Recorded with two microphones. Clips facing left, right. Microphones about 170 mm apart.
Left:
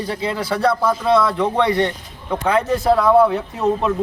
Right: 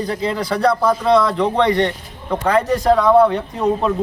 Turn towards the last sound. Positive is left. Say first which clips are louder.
# right 1 dB
turn(degrees=5)  # may be behind; listen again after turning